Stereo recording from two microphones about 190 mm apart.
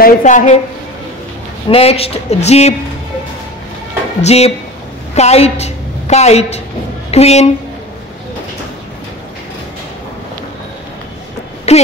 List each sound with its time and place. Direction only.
0.0 s speech: 40° left (ahead or behind)
1.7 s speech: 30° left (ahead or behind)
4.2 s a woman's voice: 35° left (ahead or behind)
11.7 s a woman's voice: 35° left (ahead or behind)